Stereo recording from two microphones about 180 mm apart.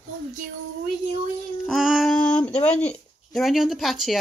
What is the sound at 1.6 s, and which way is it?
Female singing, centre (ahead or behind).